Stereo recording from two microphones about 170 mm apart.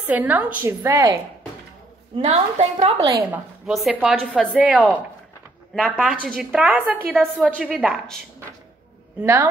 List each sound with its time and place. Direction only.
0.1 s a woman's voice: 10° right (ahead or behind)
2.1 s a woman's voice: 40° right (ahead or behind)
3.1 s speech: 20° right (ahead or behind)
3.6 s a woman's voice: 5° right (ahead or behind)
4.6 s a woman's voice: 10° right (ahead or behind)
5.9 s a woman's voice: centre (ahead or behind)
6.6 s a woman's voice: 10° right (ahead or behind)
9.2 s a woman's voice: 15° right (ahead or behind)